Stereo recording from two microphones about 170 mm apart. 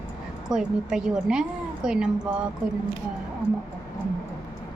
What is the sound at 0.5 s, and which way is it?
A woman's voice, 5° right (ahead or behind).